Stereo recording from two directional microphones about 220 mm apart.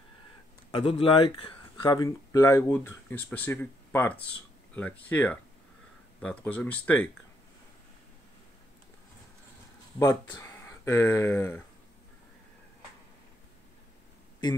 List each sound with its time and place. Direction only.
0.7 s speech: 25° left (ahead or behind); by 7.1 s 10° left (ahead or behind)
9.9 s speech: 15° left (ahead or behind)